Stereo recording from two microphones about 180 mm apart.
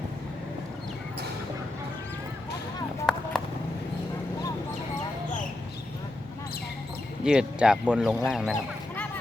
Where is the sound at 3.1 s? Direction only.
Centre (ahead or behind).